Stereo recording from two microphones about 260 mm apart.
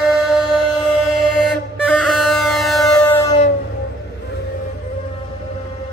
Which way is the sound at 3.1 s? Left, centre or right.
Left.